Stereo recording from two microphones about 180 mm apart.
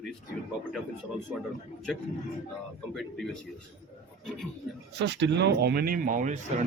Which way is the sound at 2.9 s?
Centre (ahead or behind).